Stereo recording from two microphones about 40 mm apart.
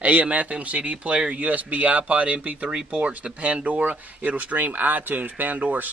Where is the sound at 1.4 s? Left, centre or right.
Right.